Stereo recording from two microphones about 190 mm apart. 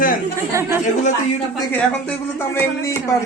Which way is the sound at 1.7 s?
10° left (ahead or behind).